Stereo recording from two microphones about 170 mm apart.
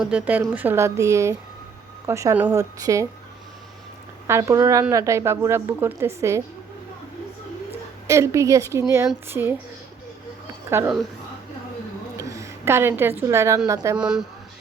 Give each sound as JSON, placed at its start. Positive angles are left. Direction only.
{"t": 0.0, "sound": "a woman's voice", "side_deg": -5}
{"t": 4.3, "sound": "a woman's voice", "side_deg": -20}
{"t": 8.0, "sound": "a woman's voice", "side_deg": -15}
{"t": 10.7, "sound": "a woman's voice", "side_deg": -15}
{"t": 12.1, "sound": "a woman's voice", "side_deg": -20}
{"t": 13.9, "sound": "speech", "side_deg": -5}